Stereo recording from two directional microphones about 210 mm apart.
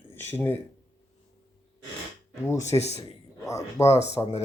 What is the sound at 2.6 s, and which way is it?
Speech, 30° left (ahead or behind).